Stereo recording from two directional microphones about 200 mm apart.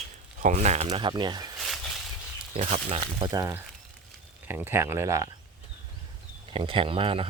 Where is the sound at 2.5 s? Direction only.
35° right (ahead or behind).